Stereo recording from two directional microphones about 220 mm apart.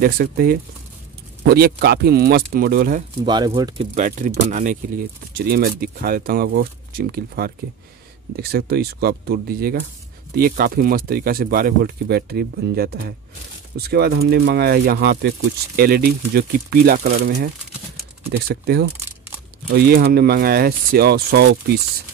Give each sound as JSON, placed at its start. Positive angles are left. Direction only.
{"t": 0.0, "sound": "speech", "side_deg": -45}
{"t": 3.3, "sound": "speech", "side_deg": -20}
{"t": 3.9, "sound": "speech", "side_deg": -35}
{"t": 18.5, "sound": "speech", "side_deg": -45}